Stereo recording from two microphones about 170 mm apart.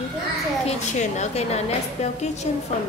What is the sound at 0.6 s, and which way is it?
A woman's voice, 40° left (ahead or behind).